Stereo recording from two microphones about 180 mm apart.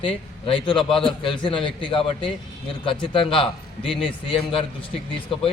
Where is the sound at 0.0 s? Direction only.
30° left (ahead or behind).